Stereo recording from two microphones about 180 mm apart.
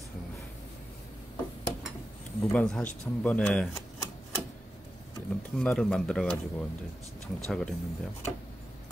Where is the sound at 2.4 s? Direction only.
5° left (ahead or behind).